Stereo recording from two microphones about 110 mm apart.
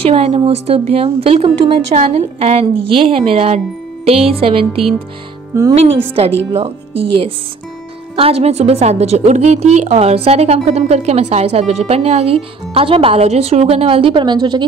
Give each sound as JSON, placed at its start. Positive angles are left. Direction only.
{"t": 0.0, "sound": "a woman's voice", "side_deg": -65}
{"t": 5.5, "sound": "speech", "side_deg": -30}
{"t": 5.8, "sound": "a woman's voice", "side_deg": -60}
{"t": 8.2, "sound": "a woman's voice", "side_deg": -70}
{"t": 14.2, "sound": "a woman's voice", "side_deg": -40}